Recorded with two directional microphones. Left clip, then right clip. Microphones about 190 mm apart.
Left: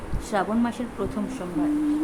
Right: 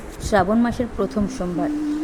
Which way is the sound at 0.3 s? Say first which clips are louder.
Right 7 dB; 35° right (ahead or behind).